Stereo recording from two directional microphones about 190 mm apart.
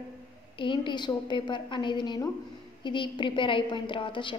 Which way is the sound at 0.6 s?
25° left (ahead or behind).